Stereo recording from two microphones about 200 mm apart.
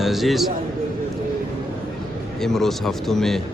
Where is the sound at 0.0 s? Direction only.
Centre (ahead or behind).